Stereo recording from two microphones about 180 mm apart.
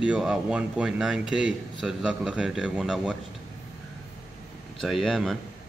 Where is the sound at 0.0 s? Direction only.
5° right (ahead or behind).